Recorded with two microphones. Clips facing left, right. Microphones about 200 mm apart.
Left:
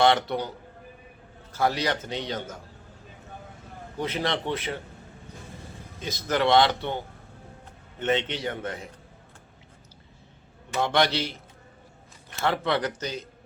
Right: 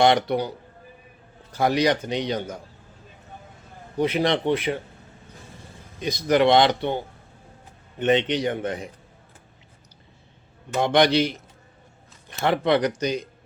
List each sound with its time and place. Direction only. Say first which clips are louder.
0.0 s a man's voice: right 3 dB; 15° right (ahead or behind)
1.5 s a man's voice: right 5 dB; 15° right (ahead or behind)
3.9 s a man's voice: right 7 dB; 15° right (ahead or behind)
6.0 s a man's voice: right 6 dB; 15° right (ahead or behind)
10.8 s a man's voice: right 5 dB; 15° right (ahead or behind)
12.4 s a man's voice: right 5 dB; 15° right (ahead or behind)